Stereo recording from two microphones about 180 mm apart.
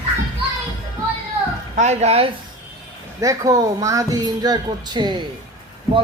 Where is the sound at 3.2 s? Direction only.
20° right (ahead or behind).